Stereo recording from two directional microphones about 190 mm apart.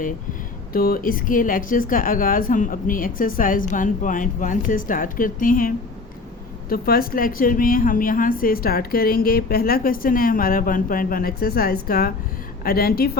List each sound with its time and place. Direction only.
0.7 s a woman's voice: 50° left (ahead or behind)